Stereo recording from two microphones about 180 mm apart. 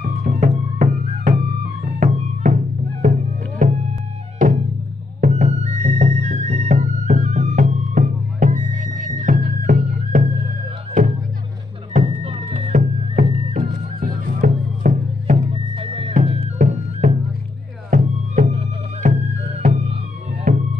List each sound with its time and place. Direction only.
0.0 s music: 55° right (ahead or behind)
0.7 s music: 40° right (ahead or behind)
5.2 s music: 40° right (ahead or behind)
13.1 s music: 45° right (ahead or behind)
15.7 s music: 30° right (ahead or behind)